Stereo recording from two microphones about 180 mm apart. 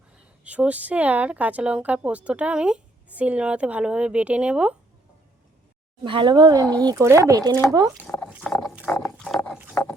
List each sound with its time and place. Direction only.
0.4 s a woman's voice: 10° right (ahead or behind)
6.0 s a woman's voice: 25° right (ahead or behind)
8.3 s a sound: 5° right (ahead or behind)
8.6 s pig: 5° right (ahead or behind)
9.5 s pig: 10° right (ahead or behind)